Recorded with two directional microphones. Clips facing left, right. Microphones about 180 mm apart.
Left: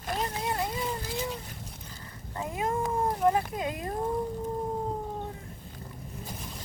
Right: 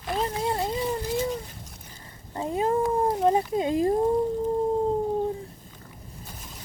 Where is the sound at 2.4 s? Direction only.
30° right (ahead or behind).